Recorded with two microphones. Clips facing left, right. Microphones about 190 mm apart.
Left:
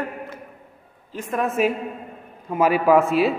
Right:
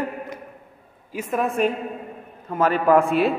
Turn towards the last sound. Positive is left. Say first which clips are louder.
# left 1 dB
turn(degrees=0)  # may be behind; listen again after turning